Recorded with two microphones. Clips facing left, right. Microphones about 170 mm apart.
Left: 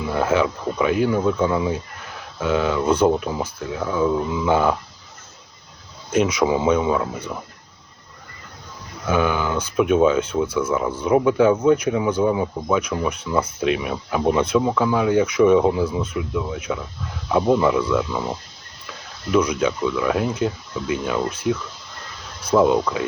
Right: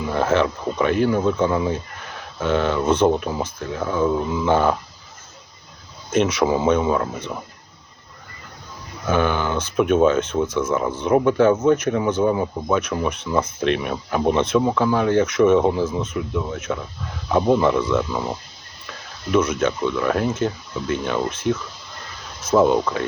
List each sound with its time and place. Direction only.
0.0 s speech: 5° left (ahead or behind)
6.1 s speech: 10° left (ahead or behind)
9.0 s speech: 5° left (ahead or behind)
22.5 s speech: centre (ahead or behind)